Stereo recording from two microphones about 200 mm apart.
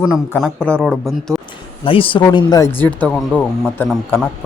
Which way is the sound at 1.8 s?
25° left (ahead or behind).